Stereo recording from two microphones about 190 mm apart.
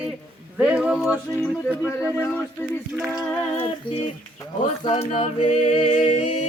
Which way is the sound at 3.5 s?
30° left (ahead or behind).